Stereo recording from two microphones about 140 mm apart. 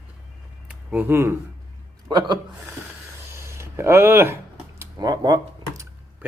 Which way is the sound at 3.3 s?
20° right (ahead or behind).